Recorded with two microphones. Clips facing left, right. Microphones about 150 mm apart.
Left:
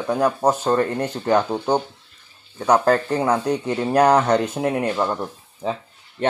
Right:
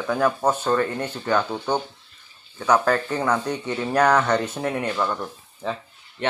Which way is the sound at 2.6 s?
30° left (ahead or behind).